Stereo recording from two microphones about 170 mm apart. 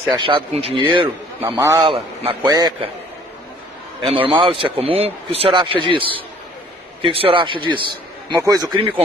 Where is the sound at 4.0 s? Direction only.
30° right (ahead or behind).